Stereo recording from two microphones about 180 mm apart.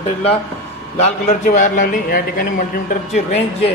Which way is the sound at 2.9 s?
40° left (ahead or behind).